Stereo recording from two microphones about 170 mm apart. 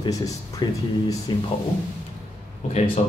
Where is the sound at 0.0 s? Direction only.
20° left (ahead or behind).